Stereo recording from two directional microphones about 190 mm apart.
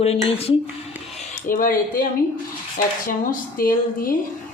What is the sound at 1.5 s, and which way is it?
Speech, 50° left (ahead or behind).